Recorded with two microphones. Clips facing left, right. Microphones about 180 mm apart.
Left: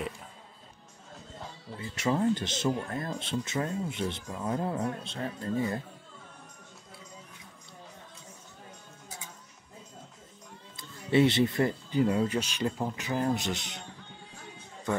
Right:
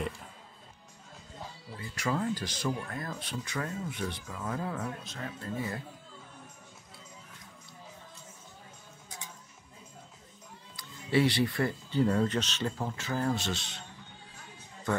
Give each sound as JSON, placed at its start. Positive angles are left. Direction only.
{"t": 1.8, "sound": "speech", "side_deg": 25}
{"t": 10.8, "sound": "speech", "side_deg": 20}